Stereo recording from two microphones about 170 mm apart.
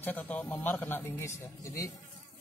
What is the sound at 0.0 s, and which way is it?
Speech, 10° left (ahead or behind).